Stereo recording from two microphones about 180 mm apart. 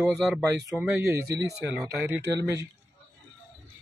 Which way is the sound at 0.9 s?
15° right (ahead or behind).